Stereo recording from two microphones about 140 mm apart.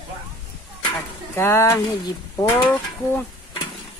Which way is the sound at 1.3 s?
20° left (ahead or behind).